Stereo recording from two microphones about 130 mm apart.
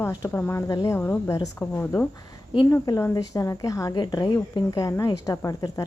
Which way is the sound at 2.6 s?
25° left (ahead or behind).